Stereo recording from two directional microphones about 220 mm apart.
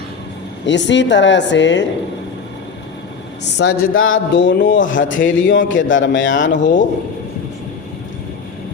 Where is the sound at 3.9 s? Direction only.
65° left (ahead or behind).